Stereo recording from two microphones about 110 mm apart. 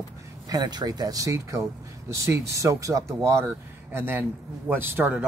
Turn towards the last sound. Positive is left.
turn(degrees=-20)  # may be behind; listen again after turning